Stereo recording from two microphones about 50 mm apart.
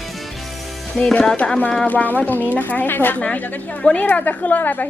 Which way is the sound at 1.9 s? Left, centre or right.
Left.